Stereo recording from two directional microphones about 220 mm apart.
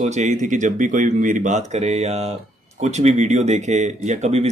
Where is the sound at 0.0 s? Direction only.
30° right (ahead or behind).